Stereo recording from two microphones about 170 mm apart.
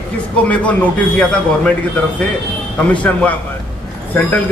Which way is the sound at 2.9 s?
10° left (ahead or behind).